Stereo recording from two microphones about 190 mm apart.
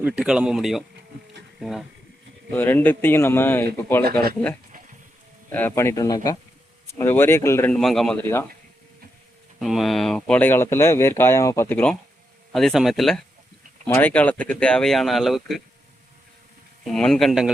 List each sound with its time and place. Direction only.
0.0 s speech: 5° right (ahead or behind)
0.9 s bee: 65° right (ahead or behind)
1.6 s speech: centre (ahead or behind)
2.5 s speech: 10° left (ahead or behind)
5.5 s speech: 10° left (ahead or behind)
9.6 s speech: centre (ahead or behind)
16.8 s speech: centre (ahead or behind)